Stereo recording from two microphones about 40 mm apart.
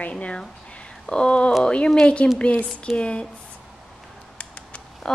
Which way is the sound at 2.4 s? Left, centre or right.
Left.